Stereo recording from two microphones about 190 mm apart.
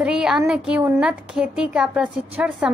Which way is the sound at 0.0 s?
5° right (ahead or behind).